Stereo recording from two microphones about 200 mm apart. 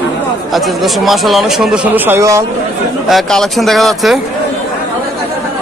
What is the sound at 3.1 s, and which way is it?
Speech, centre (ahead or behind).